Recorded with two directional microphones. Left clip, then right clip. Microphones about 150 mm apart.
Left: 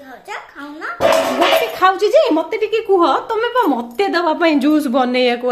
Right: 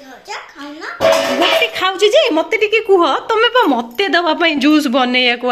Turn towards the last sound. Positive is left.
turn(degrees=0)  # may be behind; listen again after turning